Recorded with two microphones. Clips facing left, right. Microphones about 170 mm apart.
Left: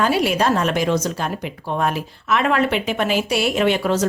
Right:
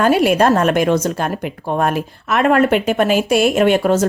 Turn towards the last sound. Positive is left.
turn(degrees=-50)  # may be behind; listen again after turning